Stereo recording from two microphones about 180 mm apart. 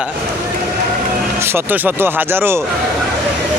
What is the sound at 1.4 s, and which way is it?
Speech, 15° right (ahead or behind).